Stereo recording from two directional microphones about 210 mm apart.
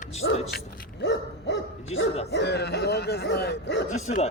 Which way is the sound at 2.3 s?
55° left (ahead or behind).